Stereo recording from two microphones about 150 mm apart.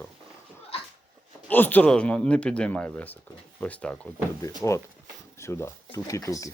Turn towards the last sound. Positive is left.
turn(degrees=20)  # may be behind; listen again after turning